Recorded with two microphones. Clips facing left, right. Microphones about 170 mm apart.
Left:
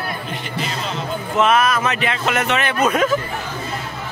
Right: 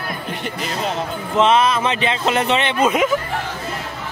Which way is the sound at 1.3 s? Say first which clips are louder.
Right 1 dB; 25° right (ahead or behind).